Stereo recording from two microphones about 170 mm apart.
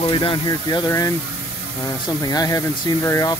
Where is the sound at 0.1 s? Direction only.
30° left (ahead or behind).